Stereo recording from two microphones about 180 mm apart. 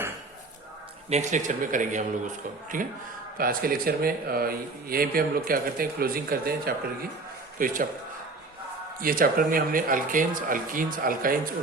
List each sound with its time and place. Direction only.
1.1 s a man's voice: 40° right (ahead or behind)
9.0 s speech: 50° right (ahead or behind)